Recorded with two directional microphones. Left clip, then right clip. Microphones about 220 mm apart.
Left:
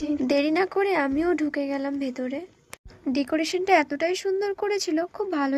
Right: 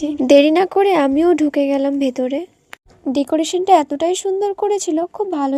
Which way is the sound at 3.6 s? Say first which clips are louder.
Right 8 dB; 30° right (ahead or behind).